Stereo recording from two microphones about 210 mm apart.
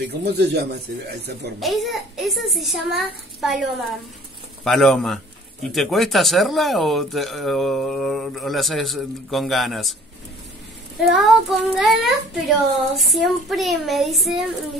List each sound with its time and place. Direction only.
0.1 s a man's voice: 55° right (ahead or behind)
1.6 s speech: centre (ahead or behind)
4.6 s speech: centre (ahead or behind)
11.1 s speech: centre (ahead or behind)